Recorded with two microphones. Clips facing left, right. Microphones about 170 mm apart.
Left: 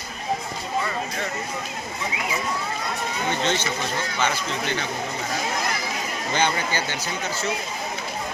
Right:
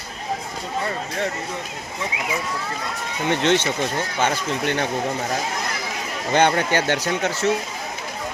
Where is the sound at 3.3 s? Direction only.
70° right (ahead or behind).